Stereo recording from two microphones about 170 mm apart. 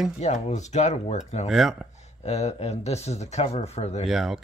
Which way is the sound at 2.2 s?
40° left (ahead or behind).